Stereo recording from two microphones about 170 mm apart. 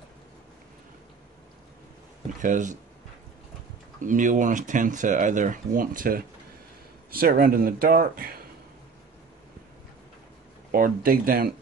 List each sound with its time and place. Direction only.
2.4 s speech: 45° right (ahead or behind)
4.0 s speech: 50° right (ahead or behind)
10.7 s speech: 60° right (ahead or behind)